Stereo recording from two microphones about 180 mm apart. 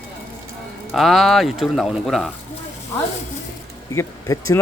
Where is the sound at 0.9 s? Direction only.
Centre (ahead or behind).